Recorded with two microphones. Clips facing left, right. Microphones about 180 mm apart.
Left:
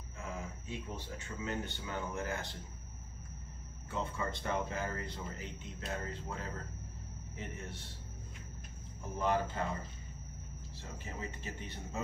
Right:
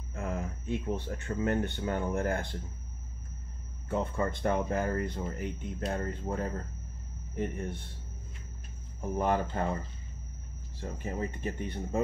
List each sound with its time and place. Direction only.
0.1 s speech: 55° right (ahead or behind)
3.9 s speech: 55° right (ahead or behind)
9.1 s speech: 55° right (ahead or behind)
10.8 s speech: 50° right (ahead or behind)